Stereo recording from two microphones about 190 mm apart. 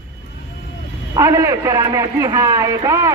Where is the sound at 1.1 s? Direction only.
15° right (ahead or behind).